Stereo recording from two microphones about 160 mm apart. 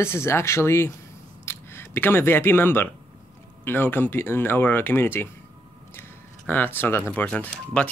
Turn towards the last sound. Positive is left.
turn(degrees=5)  # may be behind; listen again after turning